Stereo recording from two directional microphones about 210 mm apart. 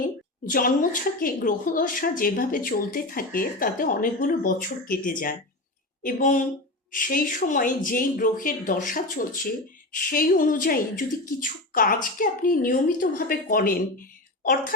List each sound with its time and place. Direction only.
0.0 s a woman's voice: 40° left (ahead or behind)